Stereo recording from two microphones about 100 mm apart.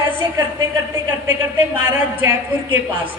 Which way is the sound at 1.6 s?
20° right (ahead or behind).